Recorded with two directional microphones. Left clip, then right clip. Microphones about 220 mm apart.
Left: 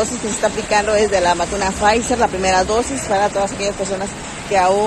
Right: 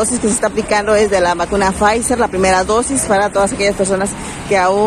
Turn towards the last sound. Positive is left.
turn(degrees=-10)  # may be behind; listen again after turning